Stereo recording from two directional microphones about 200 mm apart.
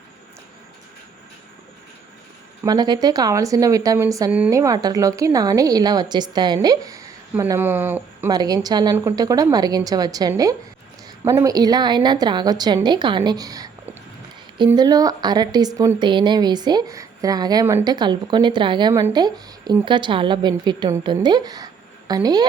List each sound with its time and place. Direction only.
2.6 s a woman's voice: 20° right (ahead or behind)
14.7 s speech: 20° right (ahead or behind)